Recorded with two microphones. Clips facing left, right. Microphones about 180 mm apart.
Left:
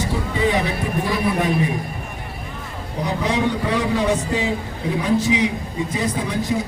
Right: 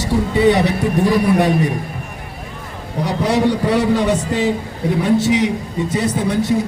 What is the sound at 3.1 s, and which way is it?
A man's voice, 75° right (ahead or behind).